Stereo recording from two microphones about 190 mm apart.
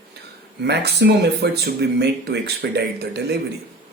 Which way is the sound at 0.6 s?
60° right (ahead or behind).